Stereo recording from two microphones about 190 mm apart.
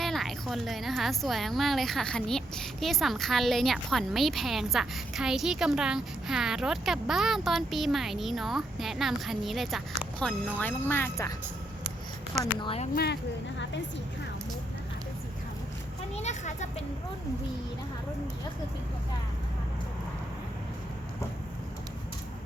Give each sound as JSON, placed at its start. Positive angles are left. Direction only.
{"t": 0.0, "sound": "a woman's voice", "side_deg": 0}
{"t": 10.6, "sound": "speech", "side_deg": 10}
{"t": 12.5, "sound": "speech", "side_deg": 30}
{"t": 12.9, "sound": "speech", "side_deg": 55}
{"t": 16.1, "sound": "children playing", "side_deg": 40}